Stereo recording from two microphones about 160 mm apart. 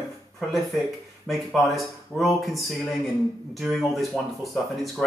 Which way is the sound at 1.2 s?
Centre (ahead or behind).